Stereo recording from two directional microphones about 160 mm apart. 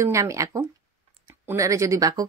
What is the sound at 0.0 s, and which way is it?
Speech, 20° right (ahead or behind).